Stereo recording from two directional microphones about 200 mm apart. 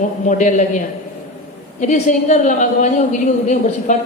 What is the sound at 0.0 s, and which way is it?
Speech, 40° left (ahead or behind).